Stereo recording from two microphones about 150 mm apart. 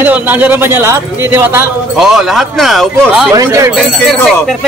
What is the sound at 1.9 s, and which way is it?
Speech, 5° right (ahead or behind).